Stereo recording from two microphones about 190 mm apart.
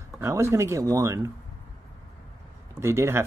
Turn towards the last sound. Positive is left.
turn(degrees=-15)  # may be behind; listen again after turning